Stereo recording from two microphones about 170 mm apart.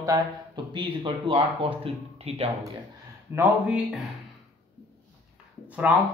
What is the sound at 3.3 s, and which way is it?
Speech, 5° right (ahead or behind).